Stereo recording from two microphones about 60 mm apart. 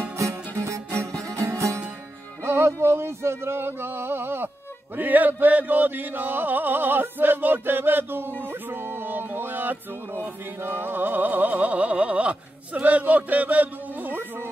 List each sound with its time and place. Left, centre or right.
0.6 s music: right
2.4 s music: right
4.9 s chant: right
8.5 s music: right